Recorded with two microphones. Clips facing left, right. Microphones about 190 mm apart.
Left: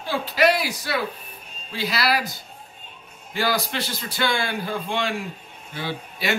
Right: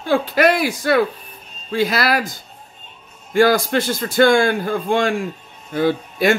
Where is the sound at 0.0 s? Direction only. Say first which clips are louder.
Right 5 dB; 50° right (ahead or behind).